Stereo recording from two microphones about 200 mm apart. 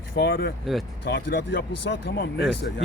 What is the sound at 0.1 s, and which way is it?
Speech, 55° left (ahead or behind).